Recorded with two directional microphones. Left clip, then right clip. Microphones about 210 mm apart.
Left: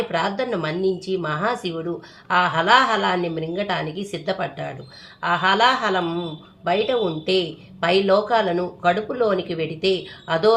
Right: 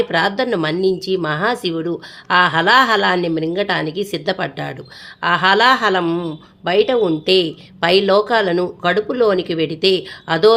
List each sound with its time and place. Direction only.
0.1 s speech: 50° right (ahead or behind)